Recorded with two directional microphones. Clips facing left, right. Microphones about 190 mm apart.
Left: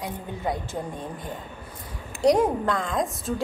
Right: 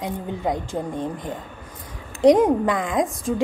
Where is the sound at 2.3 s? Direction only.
20° right (ahead or behind).